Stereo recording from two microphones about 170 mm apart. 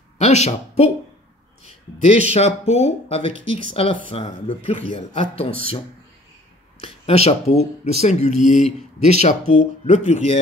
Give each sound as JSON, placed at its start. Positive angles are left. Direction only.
{"t": 0.2, "sound": "speech", "side_deg": 40}
{"t": 1.6, "sound": "a sound", "side_deg": 40}
{"t": 2.3, "sound": "speech", "side_deg": 35}
{"t": 6.8, "sound": "speech", "side_deg": 35}